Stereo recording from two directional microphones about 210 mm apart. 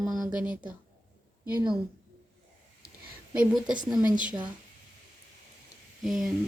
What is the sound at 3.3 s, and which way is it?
Speech, 5° right (ahead or behind).